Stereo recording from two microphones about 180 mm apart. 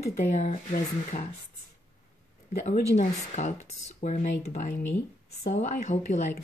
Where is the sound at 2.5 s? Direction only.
40° left (ahead or behind).